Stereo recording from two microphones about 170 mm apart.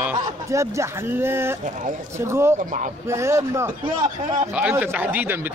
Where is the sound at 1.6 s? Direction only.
50° right (ahead or behind).